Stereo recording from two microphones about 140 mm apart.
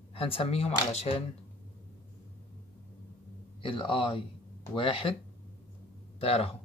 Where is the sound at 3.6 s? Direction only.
40° left (ahead or behind).